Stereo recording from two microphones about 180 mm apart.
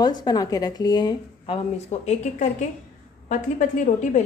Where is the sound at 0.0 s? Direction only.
20° left (ahead or behind).